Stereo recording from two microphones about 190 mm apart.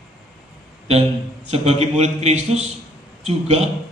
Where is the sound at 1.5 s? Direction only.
35° right (ahead or behind).